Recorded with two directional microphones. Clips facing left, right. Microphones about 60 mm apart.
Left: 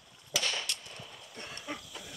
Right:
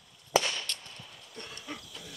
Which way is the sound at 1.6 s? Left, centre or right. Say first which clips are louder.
Left 1 dB; centre.